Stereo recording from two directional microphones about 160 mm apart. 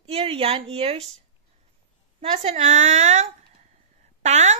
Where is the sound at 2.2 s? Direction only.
45° right (ahead or behind).